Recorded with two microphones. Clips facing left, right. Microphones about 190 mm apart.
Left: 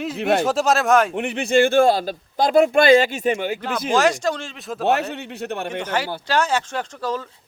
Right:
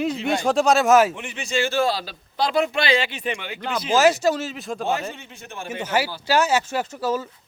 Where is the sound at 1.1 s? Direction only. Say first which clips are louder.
Left 8 dB; 60° left (ahead or behind); by 3.5 s 45° left (ahead or behind).